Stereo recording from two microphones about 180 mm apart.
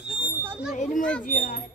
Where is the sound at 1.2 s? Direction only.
50° left (ahead or behind).